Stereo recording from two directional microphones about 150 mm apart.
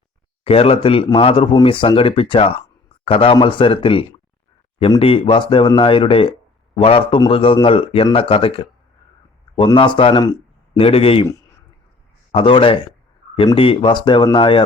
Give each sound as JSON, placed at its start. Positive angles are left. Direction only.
{"t": 0.4, "sound": "speech", "side_deg": 40}
{"t": 12.3, "sound": "speech", "side_deg": 35}